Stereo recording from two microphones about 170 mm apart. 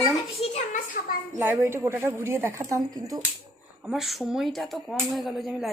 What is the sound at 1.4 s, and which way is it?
A woman's voice, 15° right (ahead or behind).